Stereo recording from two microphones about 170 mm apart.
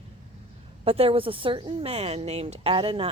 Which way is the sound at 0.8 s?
35° right (ahead or behind).